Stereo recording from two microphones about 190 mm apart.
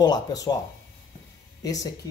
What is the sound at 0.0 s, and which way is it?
Speech, 20° left (ahead or behind).